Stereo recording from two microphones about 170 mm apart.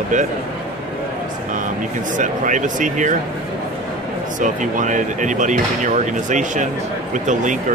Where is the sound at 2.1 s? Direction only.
50° right (ahead or behind).